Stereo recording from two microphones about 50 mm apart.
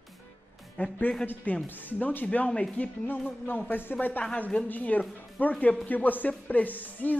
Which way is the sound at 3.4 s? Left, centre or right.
Left.